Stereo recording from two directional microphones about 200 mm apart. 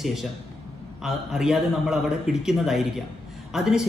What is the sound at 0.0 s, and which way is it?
A man's voice, centre (ahead or behind).